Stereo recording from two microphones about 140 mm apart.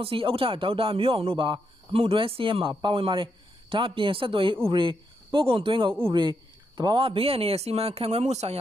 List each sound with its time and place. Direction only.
0.0 s a man's voice: 40° right (ahead or behind)